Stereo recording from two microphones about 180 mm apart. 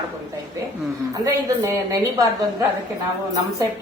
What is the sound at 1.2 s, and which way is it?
A woman's voice, 20° right (ahead or behind).